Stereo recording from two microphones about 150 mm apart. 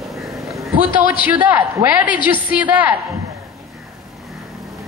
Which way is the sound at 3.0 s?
20° right (ahead or behind).